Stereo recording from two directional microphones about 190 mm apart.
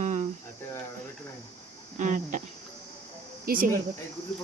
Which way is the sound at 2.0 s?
40° right (ahead or behind).